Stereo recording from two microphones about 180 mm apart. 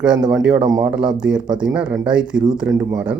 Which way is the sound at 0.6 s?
20° right (ahead or behind).